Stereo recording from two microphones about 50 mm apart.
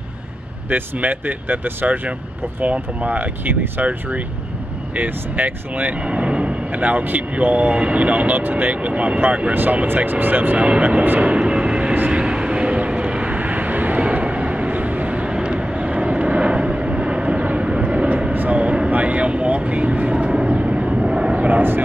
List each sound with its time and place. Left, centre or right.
0.7 s speech: right
2.6 s speech: right
6.0 s vehicle: right
6.7 s speech: right
9.5 s speech: right
10.8 s vehicle: right
21.5 s speech: right